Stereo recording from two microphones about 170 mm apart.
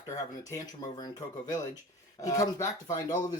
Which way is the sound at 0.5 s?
25° left (ahead or behind).